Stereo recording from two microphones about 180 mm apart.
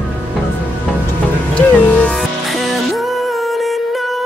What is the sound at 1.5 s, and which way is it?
Music, 5° left (ahead or behind).